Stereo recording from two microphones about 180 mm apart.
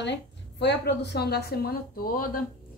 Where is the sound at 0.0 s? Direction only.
75° left (ahead or behind); by 2.4 s 55° left (ahead or behind).